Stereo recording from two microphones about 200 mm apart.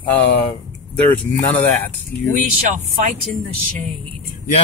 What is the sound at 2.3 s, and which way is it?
Speech, 40° right (ahead or behind).